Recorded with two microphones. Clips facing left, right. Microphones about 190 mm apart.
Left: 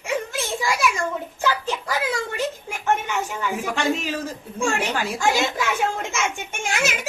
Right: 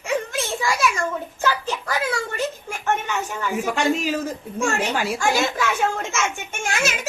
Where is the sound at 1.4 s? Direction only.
15° left (ahead or behind).